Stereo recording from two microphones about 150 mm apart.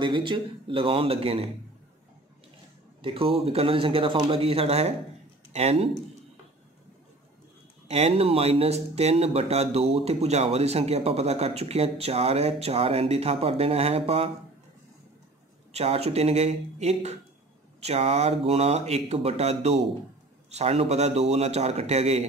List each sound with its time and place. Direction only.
0.0 s speech: 35° right (ahead or behind)
3.0 s speech: 35° right (ahead or behind)
7.9 s speech: 45° right (ahead or behind)
15.7 s speech: 45° right (ahead or behind)